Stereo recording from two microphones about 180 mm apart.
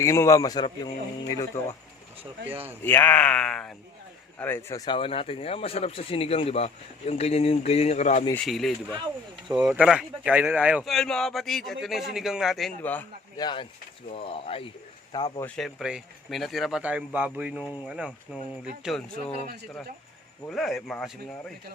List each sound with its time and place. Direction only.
0.0 s a man's voice: 15° left (ahead or behind)
2.8 s speech: 10° left (ahead or behind)
4.9 s speech: 30° left (ahead or behind)
8.4 s speech: centre (ahead or behind)
13.3 s a man's voice: 25° left (ahead or behind)
15.4 s speech: centre (ahead or behind)
20.5 s speech: centre (ahead or behind)